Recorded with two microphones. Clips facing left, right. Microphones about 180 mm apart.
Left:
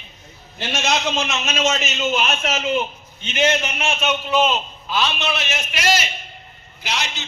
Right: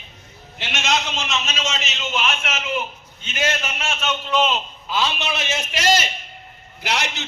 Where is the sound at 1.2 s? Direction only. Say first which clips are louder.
Left 5 dB; 50° left (ahead or behind); by 4.6 s 5° left (ahead or behind).